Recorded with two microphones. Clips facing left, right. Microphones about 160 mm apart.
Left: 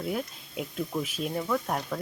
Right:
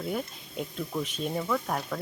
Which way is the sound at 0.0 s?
5° left (ahead or behind).